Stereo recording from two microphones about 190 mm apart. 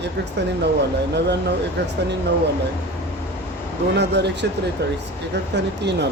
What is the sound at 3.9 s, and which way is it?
Speech, 65° right (ahead or behind).